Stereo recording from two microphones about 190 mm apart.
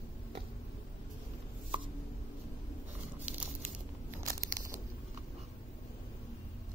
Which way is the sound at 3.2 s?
5° right (ahead or behind).